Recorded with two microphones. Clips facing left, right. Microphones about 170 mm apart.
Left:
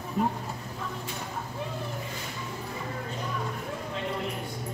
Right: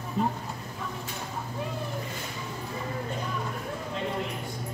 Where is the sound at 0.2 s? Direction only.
5° left (ahead or behind).